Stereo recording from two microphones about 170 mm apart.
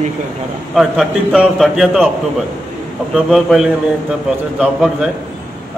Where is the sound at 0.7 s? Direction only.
Centre (ahead or behind).